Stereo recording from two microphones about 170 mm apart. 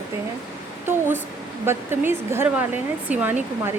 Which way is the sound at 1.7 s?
15° right (ahead or behind).